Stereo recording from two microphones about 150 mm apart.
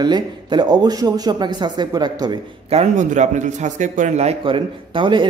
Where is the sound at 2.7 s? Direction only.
50° right (ahead or behind).